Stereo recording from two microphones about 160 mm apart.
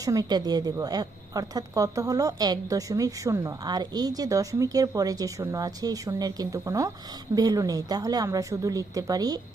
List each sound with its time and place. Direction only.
0.0 s a woman's voice: 25° right (ahead or behind)